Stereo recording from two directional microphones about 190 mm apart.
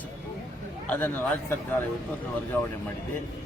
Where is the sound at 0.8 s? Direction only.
10° left (ahead or behind).